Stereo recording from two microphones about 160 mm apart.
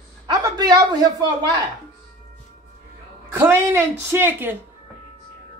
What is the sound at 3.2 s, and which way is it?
Speech, 15° right (ahead or behind).